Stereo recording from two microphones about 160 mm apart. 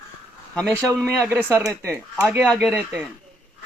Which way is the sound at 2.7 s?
Centre (ahead or behind).